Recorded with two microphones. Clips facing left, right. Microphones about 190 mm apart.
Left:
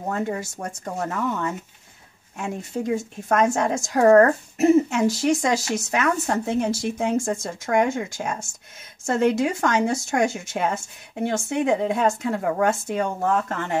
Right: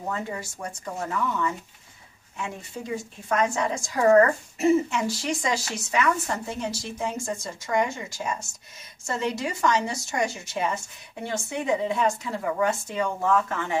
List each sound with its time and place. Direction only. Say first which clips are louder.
0.1 s a woman's voice: left 7 dB; 45° left (ahead or behind)
6.2 s a woman's voice: left 7 dB; 55° left (ahead or behind)